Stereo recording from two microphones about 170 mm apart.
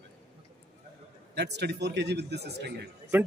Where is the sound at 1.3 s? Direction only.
85° right.